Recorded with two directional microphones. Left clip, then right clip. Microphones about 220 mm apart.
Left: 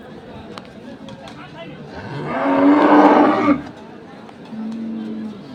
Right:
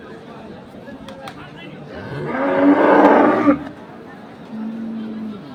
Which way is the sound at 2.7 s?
50° right (ahead or behind).